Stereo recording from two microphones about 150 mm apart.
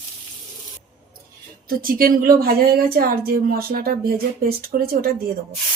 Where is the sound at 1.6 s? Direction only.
70° right (ahead or behind).